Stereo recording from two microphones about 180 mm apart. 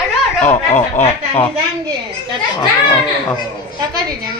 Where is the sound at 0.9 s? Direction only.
15° left (ahead or behind).